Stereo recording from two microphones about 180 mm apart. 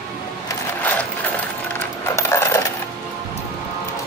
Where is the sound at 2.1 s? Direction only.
15° left (ahead or behind).